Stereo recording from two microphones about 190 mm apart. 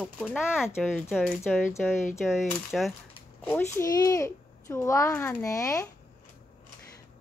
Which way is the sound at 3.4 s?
15° left (ahead or behind).